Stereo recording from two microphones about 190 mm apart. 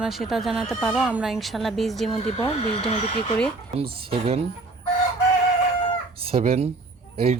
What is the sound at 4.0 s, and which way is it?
Speech, 30° right (ahead or behind).